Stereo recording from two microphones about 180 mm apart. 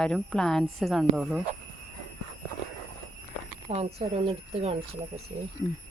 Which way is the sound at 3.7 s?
35° right (ahead or behind).